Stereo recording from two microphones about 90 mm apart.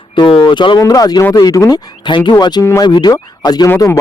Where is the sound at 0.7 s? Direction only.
40° left (ahead or behind).